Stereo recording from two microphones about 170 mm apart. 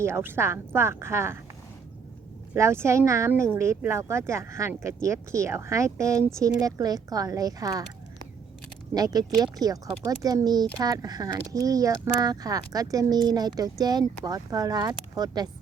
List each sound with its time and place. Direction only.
0.0 s speech: 15° right (ahead or behind)
2.5 s speech: 15° right (ahead or behind)
9.0 s speech: 20° right (ahead or behind)